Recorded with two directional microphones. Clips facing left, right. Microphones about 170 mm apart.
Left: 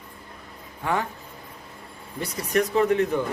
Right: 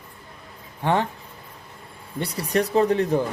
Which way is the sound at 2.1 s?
30° right (ahead or behind).